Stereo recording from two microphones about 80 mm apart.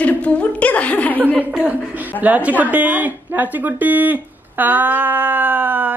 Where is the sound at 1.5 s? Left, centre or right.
Centre.